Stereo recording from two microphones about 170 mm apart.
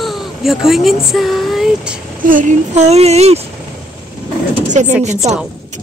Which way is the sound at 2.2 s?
50° right (ahead or behind).